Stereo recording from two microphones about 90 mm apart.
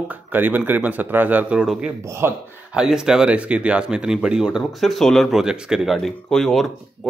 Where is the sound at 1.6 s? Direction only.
10° right (ahead or behind).